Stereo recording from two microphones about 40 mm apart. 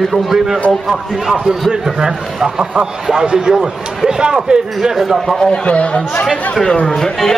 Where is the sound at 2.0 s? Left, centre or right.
Centre.